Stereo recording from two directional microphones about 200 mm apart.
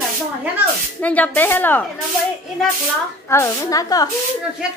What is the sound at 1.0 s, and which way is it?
Speech, 10° left (ahead or behind).